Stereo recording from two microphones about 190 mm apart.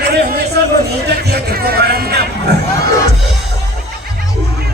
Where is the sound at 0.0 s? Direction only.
60° right (ahead or behind).